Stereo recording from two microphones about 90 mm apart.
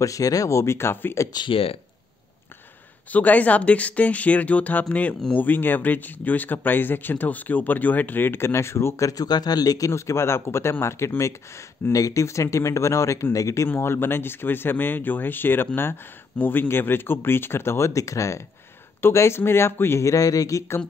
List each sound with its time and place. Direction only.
0.0 s speech: 40° left (ahead or behind)
1.5 s speech: 90° left
3.1 s speech: 15° left (ahead or behind); by 13.7 s 40° left (ahead or behind)
13.7 s speech: 25° left (ahead or behind)